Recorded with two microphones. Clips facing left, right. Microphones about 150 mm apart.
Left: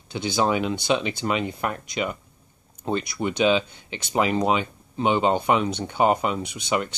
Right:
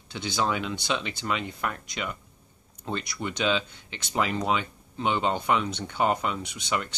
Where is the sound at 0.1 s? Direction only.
15° left (ahead or behind).